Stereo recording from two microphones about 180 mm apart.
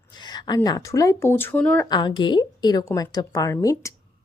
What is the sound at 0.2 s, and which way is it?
Speech, 25° left (ahead or behind).